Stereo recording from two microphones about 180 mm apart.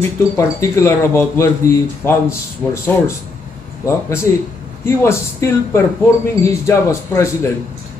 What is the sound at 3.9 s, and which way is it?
Speech, 15° left (ahead or behind).